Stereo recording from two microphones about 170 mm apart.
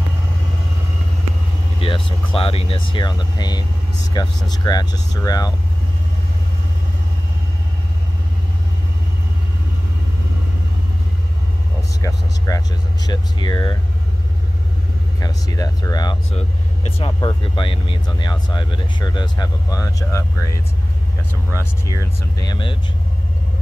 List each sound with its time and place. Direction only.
1.8 s speech: 30° left (ahead or behind)
12.0 s speech: 20° left (ahead or behind)
15.1 s speech: 20° left (ahead or behind)
21.8 s speech: 20° left (ahead or behind)